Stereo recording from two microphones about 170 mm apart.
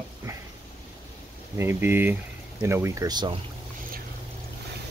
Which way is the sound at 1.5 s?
15° right (ahead or behind).